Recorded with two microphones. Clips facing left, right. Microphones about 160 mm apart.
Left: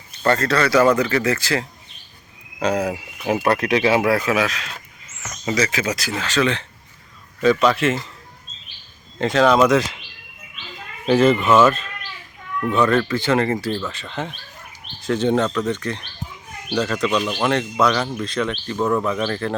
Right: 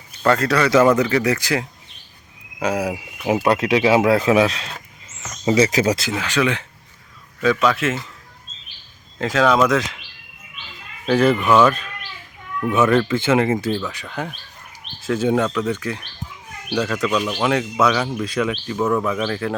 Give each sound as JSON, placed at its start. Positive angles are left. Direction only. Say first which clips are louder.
{"t": 0.3, "sound": "speech", "louder": "right 1 dB", "side_deg": -15}
{"t": 6.0, "sound": "speech", "louder": "even", "side_deg": -15}
{"t": 7.4, "sound": "speech", "louder": "left 2 dB", "side_deg": 0}
{"t": 9.1, "sound": "speech", "louder": "left 1 dB", "side_deg": 0}
{"t": 11.0, "sound": "speech", "louder": "left 1 dB", "side_deg": 0}
{"t": 12.5, "sound": "speech", "louder": "right 1 dB", "side_deg": -10}